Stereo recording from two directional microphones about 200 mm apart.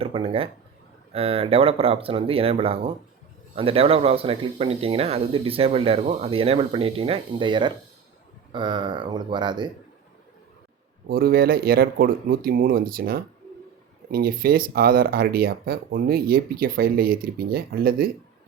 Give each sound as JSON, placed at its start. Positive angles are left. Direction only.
{"t": 0.0, "sound": "speech", "side_deg": -30}
{"t": 11.1, "sound": "speech", "side_deg": -50}